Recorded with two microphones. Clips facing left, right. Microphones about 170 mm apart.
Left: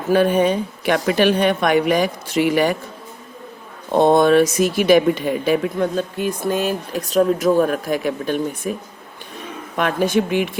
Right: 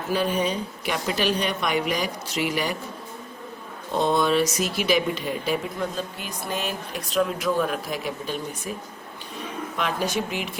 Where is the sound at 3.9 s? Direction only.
55° left (ahead or behind).